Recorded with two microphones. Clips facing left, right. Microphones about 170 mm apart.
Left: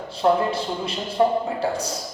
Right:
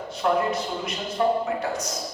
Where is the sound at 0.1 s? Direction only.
30° left (ahead or behind).